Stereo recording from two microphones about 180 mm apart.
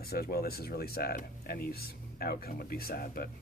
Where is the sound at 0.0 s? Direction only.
60° left (ahead or behind).